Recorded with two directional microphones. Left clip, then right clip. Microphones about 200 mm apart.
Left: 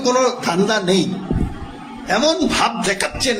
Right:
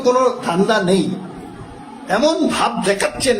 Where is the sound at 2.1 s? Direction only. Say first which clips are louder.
Right 1 dB; 10° right (ahead or behind).